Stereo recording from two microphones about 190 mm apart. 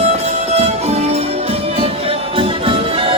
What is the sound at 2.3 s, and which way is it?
Music, 30° right (ahead or behind).